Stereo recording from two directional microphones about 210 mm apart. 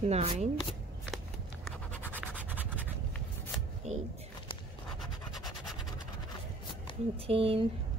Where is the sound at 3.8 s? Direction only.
30° right (ahead or behind).